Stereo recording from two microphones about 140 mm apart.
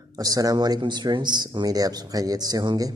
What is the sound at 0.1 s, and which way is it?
Speech, 25° right (ahead or behind).